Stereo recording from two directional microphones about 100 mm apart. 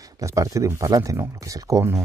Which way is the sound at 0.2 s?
30° right (ahead or behind).